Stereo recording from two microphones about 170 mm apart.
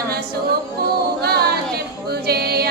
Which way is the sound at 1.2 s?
65° right (ahead or behind).